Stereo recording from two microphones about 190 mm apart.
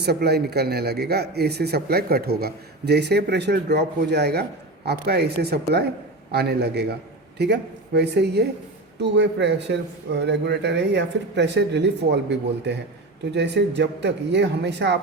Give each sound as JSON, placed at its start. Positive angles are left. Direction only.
{"t": 0.0, "sound": "speech", "side_deg": -55}